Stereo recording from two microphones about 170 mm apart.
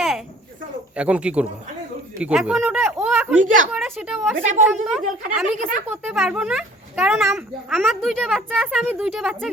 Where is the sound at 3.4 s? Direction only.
50° right (ahead or behind).